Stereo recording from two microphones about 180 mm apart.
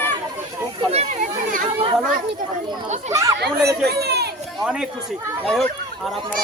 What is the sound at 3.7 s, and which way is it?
Speech, 65° right (ahead or behind).